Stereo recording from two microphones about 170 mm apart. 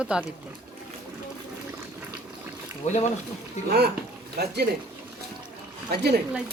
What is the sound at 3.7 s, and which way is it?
Speech, 65° right (ahead or behind).